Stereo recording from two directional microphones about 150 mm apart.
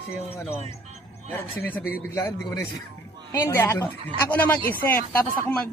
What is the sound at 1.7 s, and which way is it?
A man's voice, 10° left (ahead or behind).